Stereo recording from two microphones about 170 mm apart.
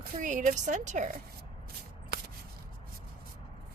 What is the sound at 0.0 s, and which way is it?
Speech, 50° right (ahead or behind).